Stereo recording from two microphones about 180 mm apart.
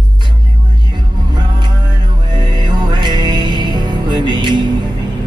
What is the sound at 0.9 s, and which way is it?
Music, 25° right (ahead or behind).